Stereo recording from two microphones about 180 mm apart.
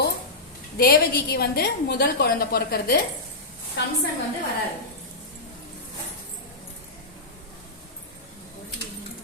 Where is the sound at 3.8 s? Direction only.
70° left (ahead or behind).